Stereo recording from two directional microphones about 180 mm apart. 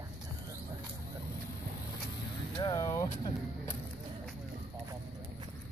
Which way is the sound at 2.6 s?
20° left (ahead or behind).